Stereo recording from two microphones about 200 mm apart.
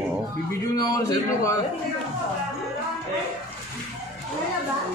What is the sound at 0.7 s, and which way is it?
Speech, 20° left (ahead or behind).